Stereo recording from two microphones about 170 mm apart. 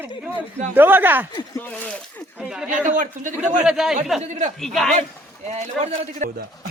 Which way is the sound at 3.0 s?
50° right (ahead or behind).